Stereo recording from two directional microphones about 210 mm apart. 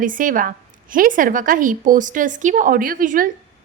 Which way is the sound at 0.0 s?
40° right (ahead or behind).